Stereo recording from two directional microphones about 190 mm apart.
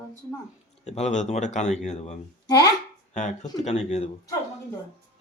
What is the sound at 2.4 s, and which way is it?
Speech, 20° left (ahead or behind).